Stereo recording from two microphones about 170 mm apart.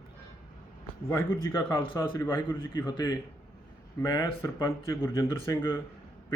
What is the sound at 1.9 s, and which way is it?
A man's voice, 15° left (ahead or behind).